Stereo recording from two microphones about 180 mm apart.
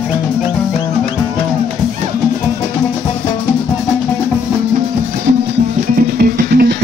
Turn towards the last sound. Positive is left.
turn(degrees=-60)  # may be behind; listen again after turning